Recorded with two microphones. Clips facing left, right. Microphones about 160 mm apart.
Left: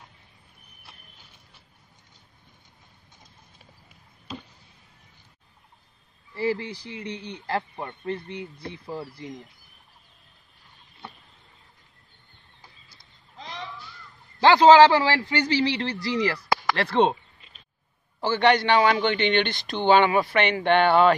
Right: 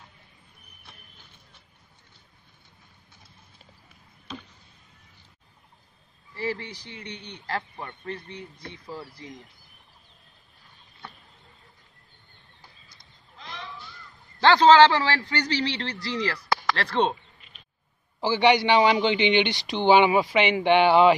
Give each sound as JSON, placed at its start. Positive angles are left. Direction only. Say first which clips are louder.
{"t": 6.3, "sound": "speech", "louder": "left 5 dB", "side_deg": 25}
{"t": 14.4, "sound": "a man's voice", "louder": "left 2 dB", "side_deg": 10}
{"t": 18.2, "sound": "a man's voice", "louder": "even", "side_deg": -10}